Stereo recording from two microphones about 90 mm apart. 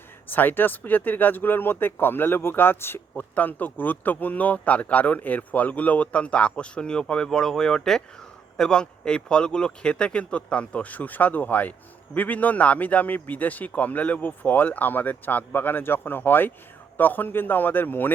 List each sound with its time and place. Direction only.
0.3 s speech: 20° left (ahead or behind)